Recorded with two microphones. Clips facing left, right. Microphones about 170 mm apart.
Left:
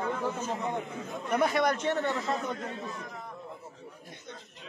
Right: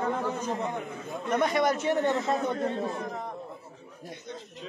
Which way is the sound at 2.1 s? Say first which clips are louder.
Right 4 dB; 25° right (ahead or behind).